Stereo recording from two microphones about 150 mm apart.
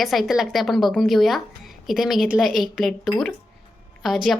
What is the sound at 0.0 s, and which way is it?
Speech, centre (ahead or behind).